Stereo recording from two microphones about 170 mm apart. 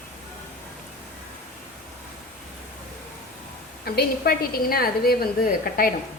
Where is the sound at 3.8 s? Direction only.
65° left (ahead or behind).